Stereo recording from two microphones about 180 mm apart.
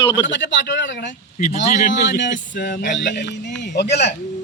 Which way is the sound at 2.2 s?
90° left.